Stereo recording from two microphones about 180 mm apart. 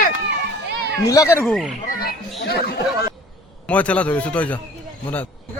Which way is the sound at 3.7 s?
5° left (ahead or behind).